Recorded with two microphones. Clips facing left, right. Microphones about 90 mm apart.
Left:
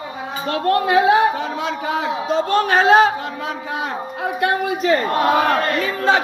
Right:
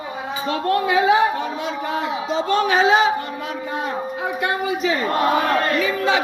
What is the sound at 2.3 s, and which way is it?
Speech, 50° left (ahead or behind).